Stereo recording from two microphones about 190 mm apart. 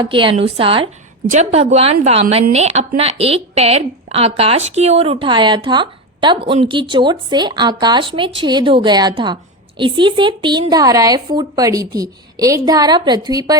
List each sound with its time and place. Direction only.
0.0 s speech: 25° right (ahead or behind)